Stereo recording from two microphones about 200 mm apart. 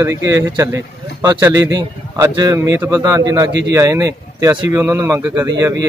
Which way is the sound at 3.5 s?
60° right (ahead or behind).